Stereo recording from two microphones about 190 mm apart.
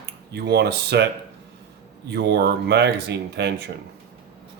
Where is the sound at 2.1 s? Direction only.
60° right (ahead or behind).